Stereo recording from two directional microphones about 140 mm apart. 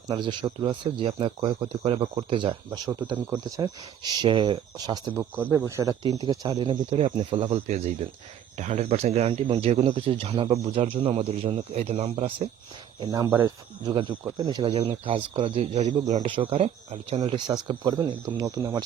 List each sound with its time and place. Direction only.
0.1 s speech: 35° right (ahead or behind)
5.4 s speech: 15° right (ahead or behind); by 7.4 s 35° right (ahead or behind)
7.4 s speech: 50° right (ahead or behind)
13.0 s speech: 30° right (ahead or behind); by 16.0 s 55° right (ahead or behind)
16.2 s speech: 40° right (ahead or behind)
17.2 s speech: 30° right (ahead or behind)